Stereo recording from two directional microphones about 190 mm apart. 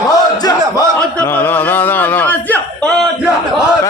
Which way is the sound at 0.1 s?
20° left (ahead or behind).